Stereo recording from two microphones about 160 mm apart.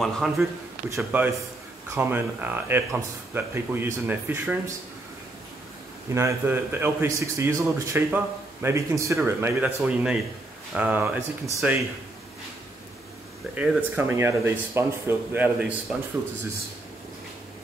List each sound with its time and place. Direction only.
0.0 s speech: centre (ahead or behind)
0.8 s speech: 15° right (ahead or behind)
6.1 s speech: 15° right (ahead or behind)
13.6 s speech: 10° right (ahead or behind)